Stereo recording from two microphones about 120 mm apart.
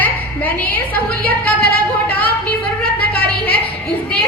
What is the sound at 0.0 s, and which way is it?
A woman's voice, 15° left (ahead or behind).